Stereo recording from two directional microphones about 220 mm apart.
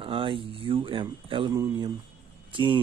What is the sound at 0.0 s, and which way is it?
Speech, 25° right (ahead or behind).